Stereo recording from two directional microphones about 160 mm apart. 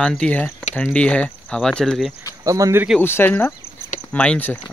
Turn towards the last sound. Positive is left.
turn(degrees=10)  # may be behind; listen again after turning